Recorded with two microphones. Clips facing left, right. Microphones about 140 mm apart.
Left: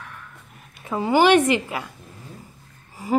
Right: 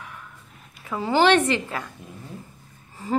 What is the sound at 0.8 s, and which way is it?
A woman's voice, 20° left (ahead or behind).